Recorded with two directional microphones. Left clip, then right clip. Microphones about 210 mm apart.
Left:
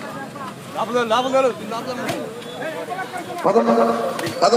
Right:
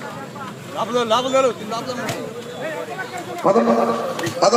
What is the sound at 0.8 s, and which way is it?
Speech, 20° right (ahead or behind).